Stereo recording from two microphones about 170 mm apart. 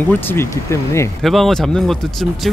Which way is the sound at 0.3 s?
15° left (ahead or behind).